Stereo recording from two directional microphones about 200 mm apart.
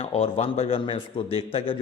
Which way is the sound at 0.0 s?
30° left (ahead or behind).